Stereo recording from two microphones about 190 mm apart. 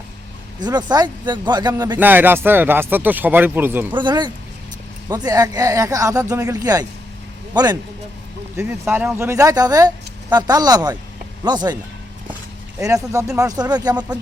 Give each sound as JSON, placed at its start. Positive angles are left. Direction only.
{"t": 0.6, "sound": "speech", "side_deg": -20}
{"t": 2.0, "sound": "speech", "side_deg": -10}
{"t": 3.9, "sound": "speech", "side_deg": -25}
{"t": 12.8, "sound": "speech", "side_deg": -15}